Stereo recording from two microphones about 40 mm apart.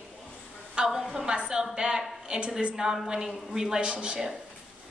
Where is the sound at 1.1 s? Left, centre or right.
Right.